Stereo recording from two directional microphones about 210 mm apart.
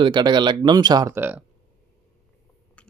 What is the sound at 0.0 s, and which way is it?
Speech, 20° right (ahead or behind).